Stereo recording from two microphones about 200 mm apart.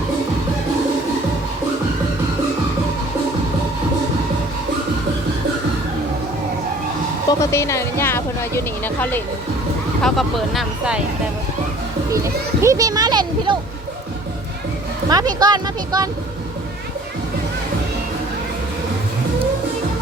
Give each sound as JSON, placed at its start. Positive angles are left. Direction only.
{"t": 7.3, "sound": "speech", "side_deg": 15}
{"t": 12.1, "sound": "a child's voice", "side_deg": -15}
{"t": 15.1, "sound": "a child's voice", "side_deg": -20}